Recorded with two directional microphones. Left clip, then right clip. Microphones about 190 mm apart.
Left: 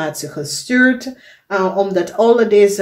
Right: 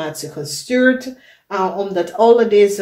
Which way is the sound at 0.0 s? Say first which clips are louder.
Left 3 dB; 30° left (ahead or behind).